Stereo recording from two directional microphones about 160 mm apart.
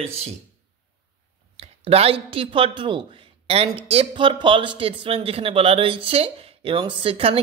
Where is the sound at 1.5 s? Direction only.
40° right (ahead or behind).